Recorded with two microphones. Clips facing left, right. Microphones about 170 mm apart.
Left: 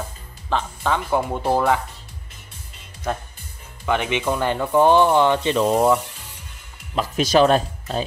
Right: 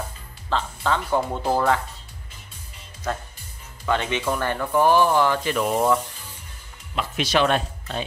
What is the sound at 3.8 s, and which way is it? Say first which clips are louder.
Speech: left 2 dB; 15° left (ahead or behind).